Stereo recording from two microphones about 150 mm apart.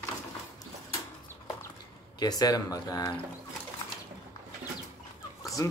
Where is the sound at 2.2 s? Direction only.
25° left (ahead or behind).